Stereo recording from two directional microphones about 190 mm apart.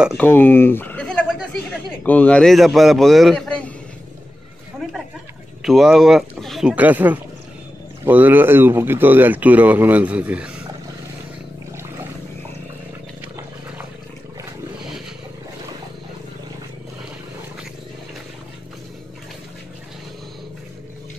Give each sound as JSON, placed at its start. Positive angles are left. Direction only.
{"t": 0.2, "sound": "speech", "side_deg": 10}
{"t": 5.6, "sound": "speech", "side_deg": 0}